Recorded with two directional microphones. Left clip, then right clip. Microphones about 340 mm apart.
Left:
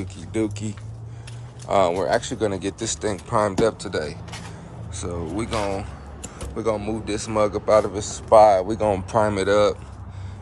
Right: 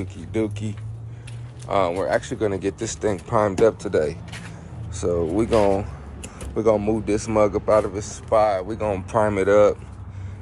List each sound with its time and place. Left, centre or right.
0.3 s speech: centre
5.0 s speech: centre
7.9 s speech: centre